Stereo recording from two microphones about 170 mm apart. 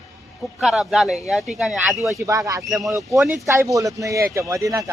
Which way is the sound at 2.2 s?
20° right (ahead or behind).